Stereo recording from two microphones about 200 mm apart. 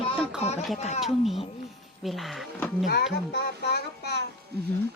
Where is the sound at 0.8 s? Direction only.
35° left (ahead or behind).